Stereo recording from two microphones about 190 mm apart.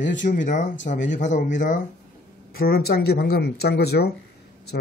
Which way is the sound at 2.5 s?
55° left (ahead or behind).